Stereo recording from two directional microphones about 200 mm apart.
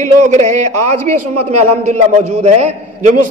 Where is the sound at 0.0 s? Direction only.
35° right (ahead or behind).